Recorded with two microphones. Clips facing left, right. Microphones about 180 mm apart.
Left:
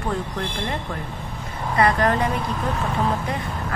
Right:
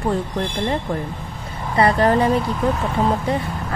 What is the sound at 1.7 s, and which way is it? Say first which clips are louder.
Speech: right 4 dB; 30° right (ahead or behind).